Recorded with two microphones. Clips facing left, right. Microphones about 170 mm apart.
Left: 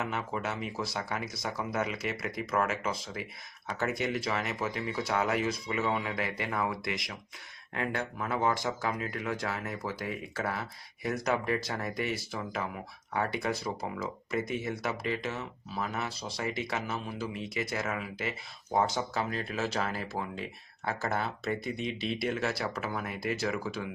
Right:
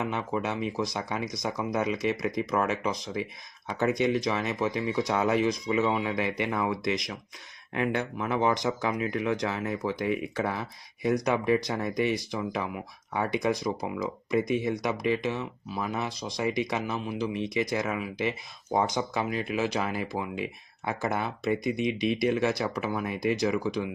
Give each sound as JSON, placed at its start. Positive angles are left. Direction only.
{"t": 0.0, "sound": "speech", "side_deg": -20}